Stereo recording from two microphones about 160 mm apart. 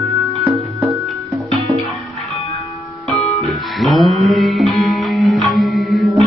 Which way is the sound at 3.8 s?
Centre (ahead or behind).